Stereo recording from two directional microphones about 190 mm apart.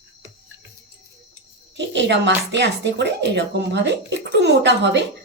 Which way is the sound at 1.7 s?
65° right (ahead or behind).